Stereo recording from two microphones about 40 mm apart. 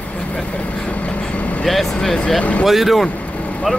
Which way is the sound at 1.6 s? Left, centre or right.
Centre.